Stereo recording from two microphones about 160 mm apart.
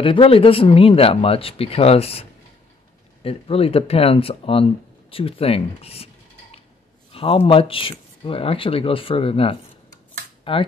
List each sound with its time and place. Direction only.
0.0 s speech: 35° left (ahead or behind)
7.1 s speech: 35° left (ahead or behind)